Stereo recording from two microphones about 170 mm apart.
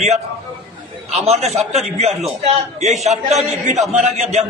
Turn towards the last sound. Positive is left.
turn(degrees=-40)  # may be behind; listen again after turning